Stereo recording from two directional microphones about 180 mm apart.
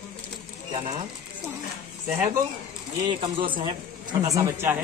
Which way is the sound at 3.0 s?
25° right (ahead or behind).